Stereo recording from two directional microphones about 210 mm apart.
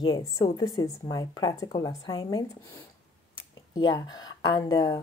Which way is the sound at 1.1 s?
20° left (ahead or behind).